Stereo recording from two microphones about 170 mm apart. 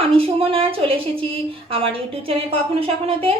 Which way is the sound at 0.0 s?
35° right (ahead or behind).